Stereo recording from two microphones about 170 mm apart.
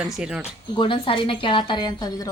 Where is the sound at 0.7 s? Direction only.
30° left (ahead or behind).